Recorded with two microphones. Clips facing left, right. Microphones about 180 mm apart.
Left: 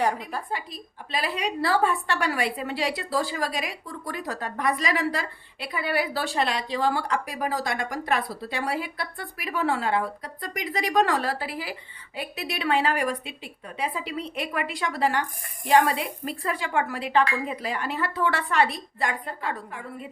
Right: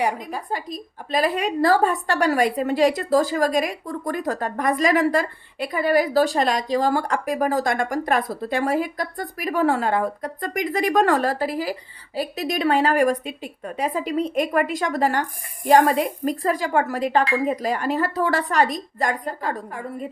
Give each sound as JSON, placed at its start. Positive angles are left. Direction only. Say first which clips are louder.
{"t": 0.5, "sound": "a woman's voice", "louder": "right 5 dB", "side_deg": -45}